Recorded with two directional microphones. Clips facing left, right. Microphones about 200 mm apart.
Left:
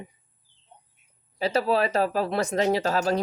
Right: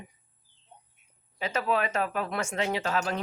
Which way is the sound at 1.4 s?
35° left (ahead or behind).